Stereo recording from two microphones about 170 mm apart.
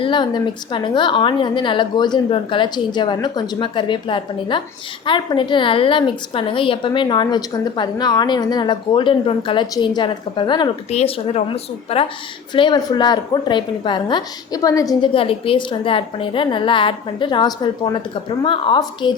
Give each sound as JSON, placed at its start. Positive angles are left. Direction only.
{"t": 0.0, "sound": "a woman's voice", "side_deg": 30}
{"t": 10.8, "sound": "a woman's voice", "side_deg": 35}
{"t": 15.1, "sound": "a woman's voice", "side_deg": 35}